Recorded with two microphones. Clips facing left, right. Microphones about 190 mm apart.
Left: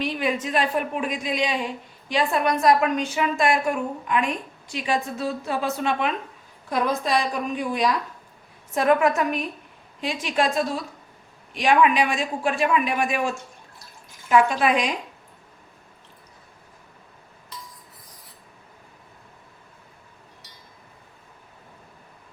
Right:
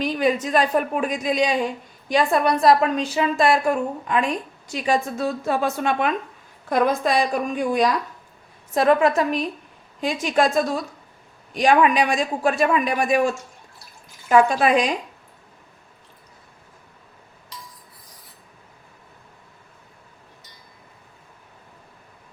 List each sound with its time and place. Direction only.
0.0 s a woman's voice: 40° right (ahead or behind)
8.7 s a woman's voice: 35° right (ahead or behind)
10.0 s a woman's voice: 45° right (ahead or behind)
14.3 s a woman's voice: 40° right (ahead or behind)